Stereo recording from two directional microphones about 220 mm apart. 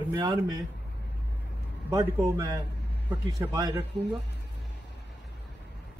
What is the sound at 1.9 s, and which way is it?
A man's voice, 10° right (ahead or behind).